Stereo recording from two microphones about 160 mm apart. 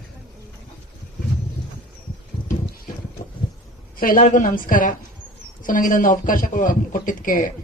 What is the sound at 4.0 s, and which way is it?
A man's voice, 60° left (ahead or behind).